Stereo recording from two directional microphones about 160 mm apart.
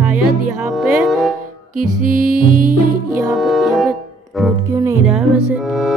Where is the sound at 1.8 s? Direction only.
60° right (ahead or behind).